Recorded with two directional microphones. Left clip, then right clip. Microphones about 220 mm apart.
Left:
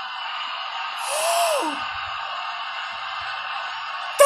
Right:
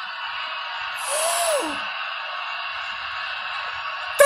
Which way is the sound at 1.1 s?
15° right (ahead or behind).